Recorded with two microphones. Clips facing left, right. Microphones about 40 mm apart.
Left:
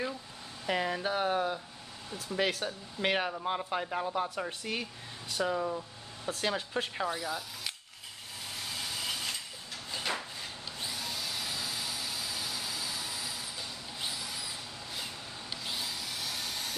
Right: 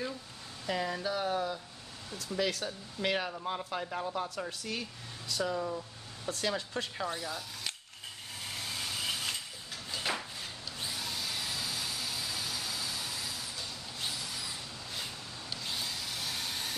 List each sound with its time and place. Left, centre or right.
0.7 s speech: left
3.3 s speech: centre
8.7 s vehicle: centre
10.1 s a sound: centre
10.8 s vehicle: centre
15.5 s a sound: centre
15.8 s vehicle: centre